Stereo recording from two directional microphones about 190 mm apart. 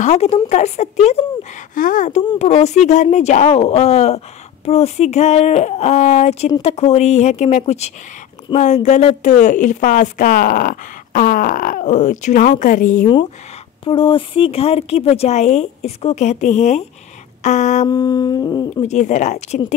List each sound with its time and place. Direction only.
0.0 s a woman's voice: 35° left (ahead or behind)
13.8 s a woman's voice: 30° left (ahead or behind)
17.8 s humming: 20° left (ahead or behind)
18.8 s a woman's voice: 35° left (ahead or behind)